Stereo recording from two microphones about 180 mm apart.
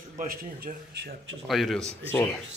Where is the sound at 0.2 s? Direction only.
50° right (ahead or behind).